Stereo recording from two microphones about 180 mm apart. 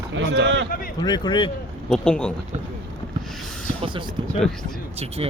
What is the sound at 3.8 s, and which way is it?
Speech, 25° right (ahead or behind).